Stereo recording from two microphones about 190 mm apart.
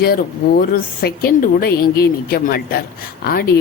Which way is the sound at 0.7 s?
50° left (ahead or behind).